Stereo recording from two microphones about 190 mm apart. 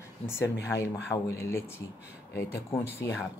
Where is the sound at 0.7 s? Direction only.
15° left (ahead or behind).